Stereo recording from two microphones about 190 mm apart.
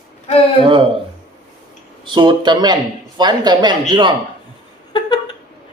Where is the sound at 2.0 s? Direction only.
25° right (ahead or behind).